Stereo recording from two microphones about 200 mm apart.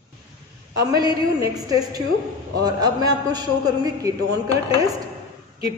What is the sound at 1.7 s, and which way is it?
A woman's voice, 20° right (ahead or behind).